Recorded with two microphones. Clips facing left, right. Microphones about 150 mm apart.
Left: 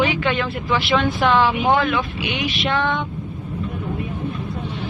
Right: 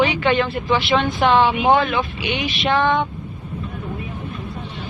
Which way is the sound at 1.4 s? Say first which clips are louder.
Right 3 dB; 25° right (ahead or behind).